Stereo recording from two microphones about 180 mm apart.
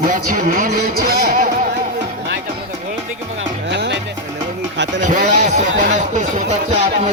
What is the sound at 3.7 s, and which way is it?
Music, 75° right (ahead or behind).